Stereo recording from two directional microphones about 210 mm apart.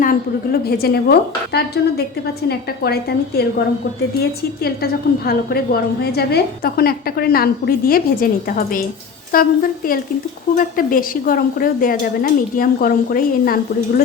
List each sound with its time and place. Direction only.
0.6 s a woman's voice: 45° left (ahead or behind)